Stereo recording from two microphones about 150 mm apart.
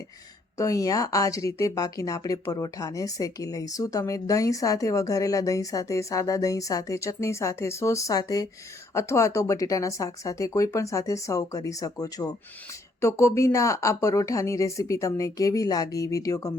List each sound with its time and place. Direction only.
0.5 s a woman's voice: 20° left (ahead or behind)